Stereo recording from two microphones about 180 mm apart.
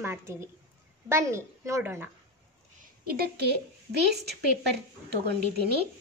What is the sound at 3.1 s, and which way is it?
Speech, 60° right (ahead or behind).